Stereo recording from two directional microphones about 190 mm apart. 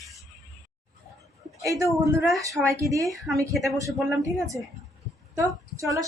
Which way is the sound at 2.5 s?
Centre (ahead or behind).